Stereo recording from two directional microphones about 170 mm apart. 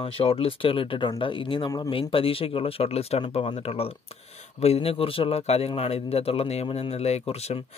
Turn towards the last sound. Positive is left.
turn(degrees=35)  # may be behind; listen again after turning